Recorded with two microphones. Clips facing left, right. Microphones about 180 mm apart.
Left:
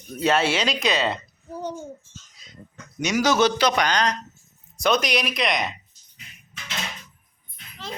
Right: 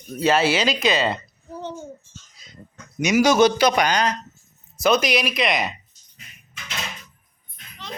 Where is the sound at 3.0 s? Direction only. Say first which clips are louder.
Right 4 dB; 10° right (ahead or behind).